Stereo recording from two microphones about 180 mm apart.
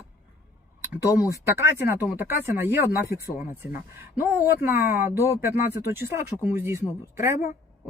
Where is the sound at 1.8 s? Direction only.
10° right (ahead or behind).